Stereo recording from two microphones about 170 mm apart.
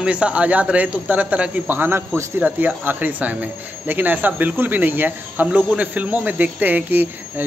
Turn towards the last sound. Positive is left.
turn(degrees=-10)  # may be behind; listen again after turning